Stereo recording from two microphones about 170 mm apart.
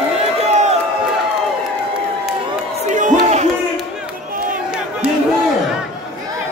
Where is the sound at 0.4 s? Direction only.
40° right (ahead or behind).